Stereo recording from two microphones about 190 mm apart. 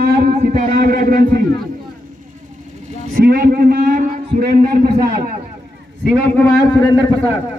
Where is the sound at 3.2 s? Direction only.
50° right (ahead or behind).